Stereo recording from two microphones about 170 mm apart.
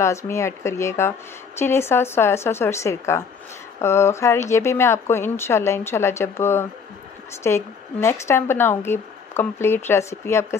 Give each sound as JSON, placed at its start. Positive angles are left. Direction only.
{"t": 0.0, "sound": "speech", "side_deg": 15}